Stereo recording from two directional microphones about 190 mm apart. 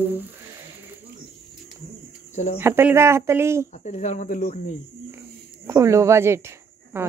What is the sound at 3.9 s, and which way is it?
Speech, 40° left (ahead or behind).